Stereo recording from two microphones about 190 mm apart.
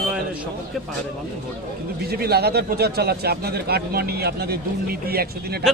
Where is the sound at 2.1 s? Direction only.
55° right (ahead or behind).